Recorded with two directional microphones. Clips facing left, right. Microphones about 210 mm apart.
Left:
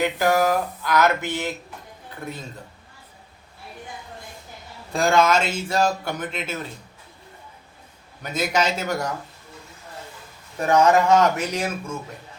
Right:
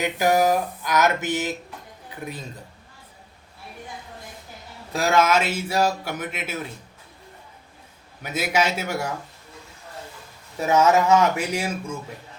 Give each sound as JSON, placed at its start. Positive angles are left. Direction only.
{"t": 0.0, "sound": "a man's voice", "side_deg": -15}
{"t": 4.9, "sound": "a man's voice", "side_deg": -5}
{"t": 8.4, "sound": "a man's voice", "side_deg": -5}
{"t": 10.6, "sound": "a man's voice", "side_deg": -5}